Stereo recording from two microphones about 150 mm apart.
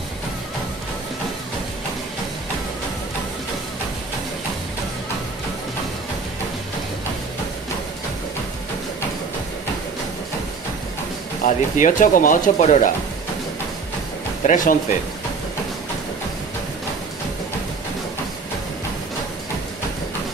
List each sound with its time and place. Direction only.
11.4 s speech: 60° left (ahead or behind)
14.5 s speech: 60° left (ahead or behind)